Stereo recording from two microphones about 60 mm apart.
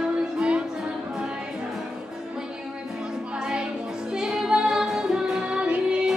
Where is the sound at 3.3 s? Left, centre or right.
Centre.